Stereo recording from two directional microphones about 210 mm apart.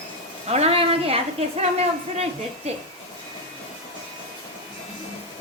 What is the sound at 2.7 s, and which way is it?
Speech, 30° right (ahead or behind).